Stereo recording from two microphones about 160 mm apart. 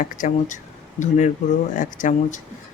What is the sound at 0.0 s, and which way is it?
Speech, 55° left (ahead or behind).